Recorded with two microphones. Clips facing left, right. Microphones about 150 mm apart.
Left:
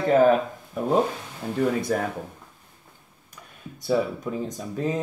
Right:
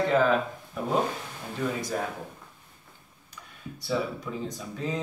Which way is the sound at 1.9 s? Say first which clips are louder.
Left 5 dB; 60° left (ahead or behind).